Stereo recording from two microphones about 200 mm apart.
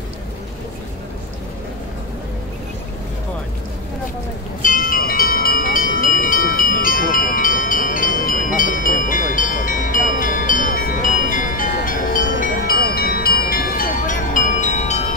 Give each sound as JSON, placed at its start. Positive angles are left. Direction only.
{"t": 4.6, "sound": "music", "side_deg": 45}